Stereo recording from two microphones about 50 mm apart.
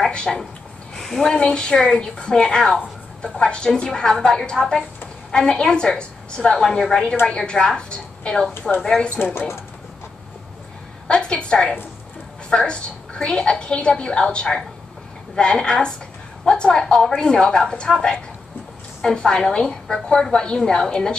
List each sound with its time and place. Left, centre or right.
0.1 s a woman's voice: centre
11.1 s a woman's voice: left